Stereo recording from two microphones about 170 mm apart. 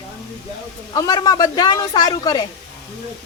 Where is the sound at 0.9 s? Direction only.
20° left (ahead or behind).